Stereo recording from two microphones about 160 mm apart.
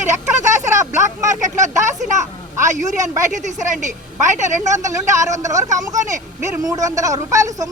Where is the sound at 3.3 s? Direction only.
50° right (ahead or behind).